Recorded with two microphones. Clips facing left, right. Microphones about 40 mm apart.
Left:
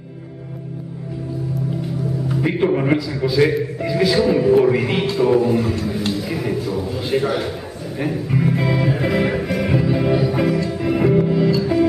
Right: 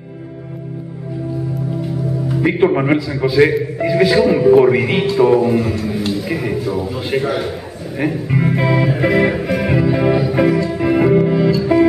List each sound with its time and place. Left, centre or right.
2.4 s a man's voice: centre
8.3 s a man's voice: centre
9.1 s music: centre